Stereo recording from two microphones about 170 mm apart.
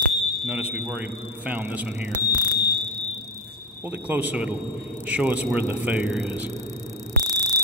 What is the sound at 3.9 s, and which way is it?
Speech, 10° right (ahead or behind).